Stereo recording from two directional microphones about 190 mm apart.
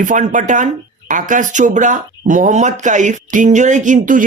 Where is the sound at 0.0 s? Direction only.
40° right (ahead or behind).